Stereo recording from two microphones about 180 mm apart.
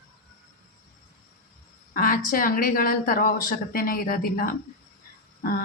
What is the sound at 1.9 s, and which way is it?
Speech, 50° left (ahead or behind).